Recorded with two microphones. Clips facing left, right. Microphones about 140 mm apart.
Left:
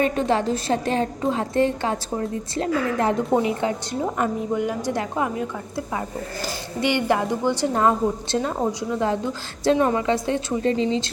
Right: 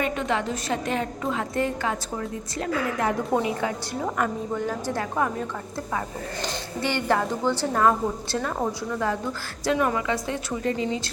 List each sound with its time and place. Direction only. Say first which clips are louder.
0.0 s a woman's voice: left 5 dB; 35° left (ahead or behind)